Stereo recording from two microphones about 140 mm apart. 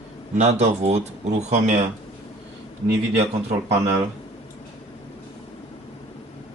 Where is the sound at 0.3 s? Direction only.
50° right (ahead or behind).